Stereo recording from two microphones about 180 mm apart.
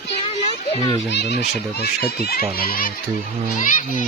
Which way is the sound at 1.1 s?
70° left (ahead or behind).